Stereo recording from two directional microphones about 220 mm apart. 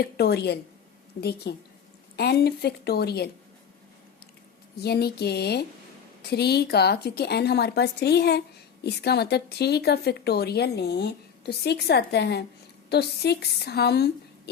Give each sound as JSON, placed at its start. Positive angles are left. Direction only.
{"t": 0.0, "sound": "speech", "side_deg": 45}
{"t": 4.8, "sound": "speech", "side_deg": 45}